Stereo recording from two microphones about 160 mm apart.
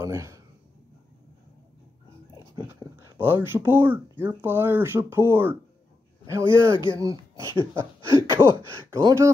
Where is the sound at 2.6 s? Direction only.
15° right (ahead or behind).